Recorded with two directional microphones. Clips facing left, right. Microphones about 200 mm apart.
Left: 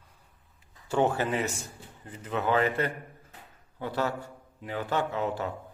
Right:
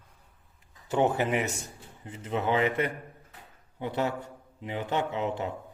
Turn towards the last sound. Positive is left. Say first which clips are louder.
# even
turn(degrees=-20)  # may be behind; listen again after turning